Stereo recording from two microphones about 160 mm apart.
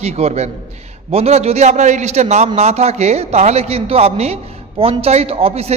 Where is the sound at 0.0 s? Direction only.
45° right (ahead or behind).